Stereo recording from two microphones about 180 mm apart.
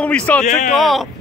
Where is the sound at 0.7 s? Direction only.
Centre (ahead or behind).